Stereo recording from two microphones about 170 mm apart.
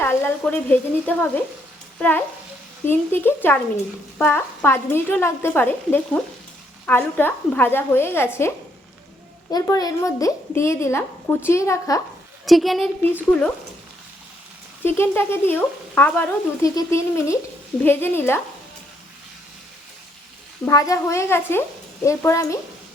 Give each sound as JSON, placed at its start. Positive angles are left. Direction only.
{"t": 0.0, "sound": "a woman's voice", "side_deg": 15}
{"t": 12.5, "sound": "speech", "side_deg": 0}
{"t": 14.8, "sound": "a woman's voice", "side_deg": 15}
{"t": 20.7, "sound": "a woman's voice", "side_deg": 20}